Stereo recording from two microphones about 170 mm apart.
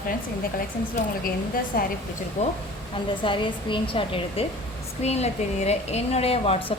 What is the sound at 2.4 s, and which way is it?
Speech, 45° left (ahead or behind).